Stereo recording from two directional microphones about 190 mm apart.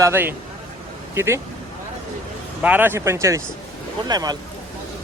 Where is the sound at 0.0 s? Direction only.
10° right (ahead or behind).